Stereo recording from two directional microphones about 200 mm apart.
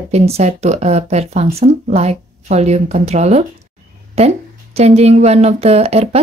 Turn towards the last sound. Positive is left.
turn(degrees=-30)  # may be behind; listen again after turning